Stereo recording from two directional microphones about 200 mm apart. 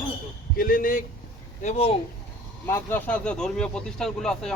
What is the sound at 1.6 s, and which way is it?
Speech, 30° left (ahead or behind).